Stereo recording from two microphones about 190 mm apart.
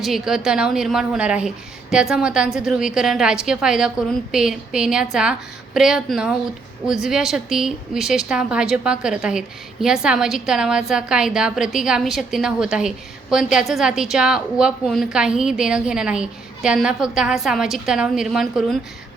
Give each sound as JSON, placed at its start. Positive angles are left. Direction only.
{"t": 0.0, "sound": "a woman's voice", "side_deg": 0}